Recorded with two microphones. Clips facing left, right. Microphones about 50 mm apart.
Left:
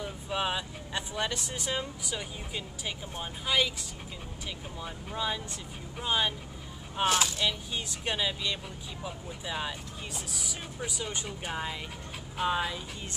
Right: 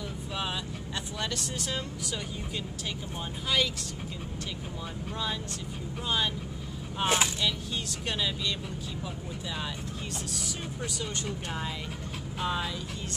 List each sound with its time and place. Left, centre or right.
0.0 s speech: centre
5.1 s speech: centre
7.1 s speech: right
7.3 s speech: centre
10.1 s speech: centre